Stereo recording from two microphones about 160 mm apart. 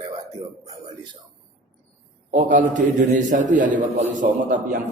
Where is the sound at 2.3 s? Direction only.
55° right (ahead or behind).